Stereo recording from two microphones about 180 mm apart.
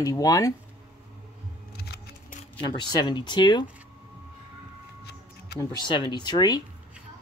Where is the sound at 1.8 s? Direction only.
60° left (ahead or behind).